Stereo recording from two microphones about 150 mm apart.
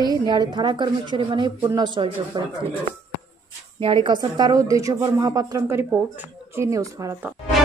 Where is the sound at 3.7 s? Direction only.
35° right (ahead or behind).